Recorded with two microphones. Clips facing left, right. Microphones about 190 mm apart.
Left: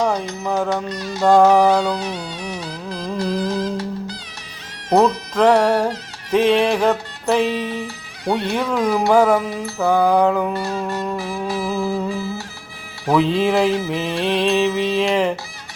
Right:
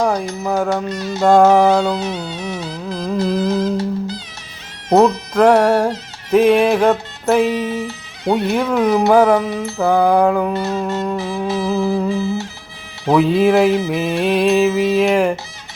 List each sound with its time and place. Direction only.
0.0 s music: 10° right (ahead or behind)
0.7 s music: 25° right (ahead or behind)
4.9 s speech: 25° right (ahead or behind)
6.3 s music: 5° right (ahead or behind)
6.7 s music: 20° right (ahead or behind)
9.8 s music: 10° right (ahead or behind)
10.5 s music: 20° right (ahead or behind)